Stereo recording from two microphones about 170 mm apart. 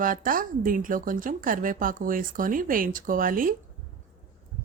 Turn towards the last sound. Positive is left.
turn(degrees=-55)  # may be behind; listen again after turning